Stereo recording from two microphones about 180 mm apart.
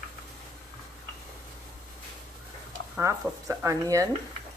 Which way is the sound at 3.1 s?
15° right (ahead or behind).